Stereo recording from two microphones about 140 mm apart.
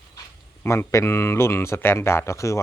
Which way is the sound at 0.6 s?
20° left (ahead or behind).